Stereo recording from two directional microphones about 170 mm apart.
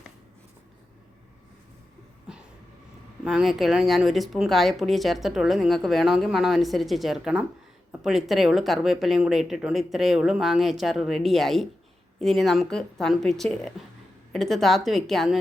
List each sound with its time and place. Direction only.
3.2 s speech: 5° right (ahead or behind)